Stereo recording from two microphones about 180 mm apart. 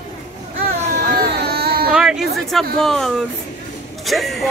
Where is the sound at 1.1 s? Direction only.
60° right (ahead or behind).